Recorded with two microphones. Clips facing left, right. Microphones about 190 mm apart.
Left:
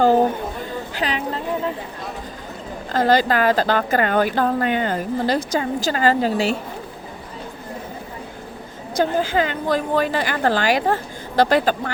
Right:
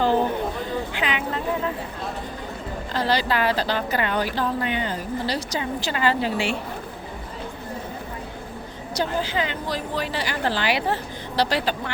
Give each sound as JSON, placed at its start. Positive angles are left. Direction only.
{"t": 0.9, "sound": "a sound", "side_deg": 35}
{"t": 2.9, "sound": "speech", "side_deg": 45}
{"t": 9.0, "sound": "speech", "side_deg": 50}